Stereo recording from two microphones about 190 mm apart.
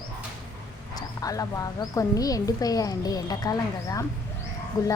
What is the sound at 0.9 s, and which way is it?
A woman's voice, 20° left (ahead or behind).